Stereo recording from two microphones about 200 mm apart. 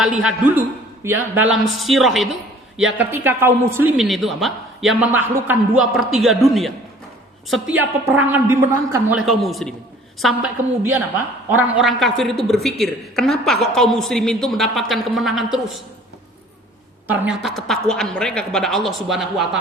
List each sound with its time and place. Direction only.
0.0 s a woman's voice: 5° right (ahead or behind)
17.1 s a woman's voice: 5° right (ahead or behind)